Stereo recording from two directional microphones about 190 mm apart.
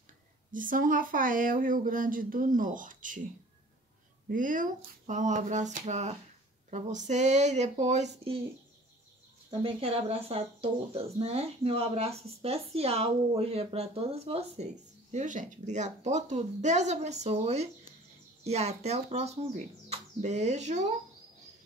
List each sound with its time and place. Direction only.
0.5 s speech: 45° right (ahead or behind)
4.3 s speech: 45° right (ahead or behind)
9.5 s speech: 30° right (ahead or behind)